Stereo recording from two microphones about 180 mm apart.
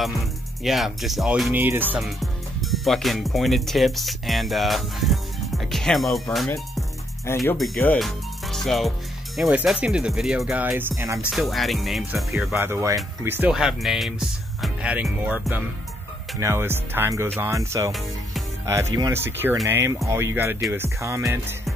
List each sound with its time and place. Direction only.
0.7 s speech: centre (ahead or behind)
7.5 s speech: 5° left (ahead or behind); by 11.3 s 10° right (ahead or behind)
11.3 s speech: centre (ahead or behind)
13.5 s speech: centre (ahead or behind)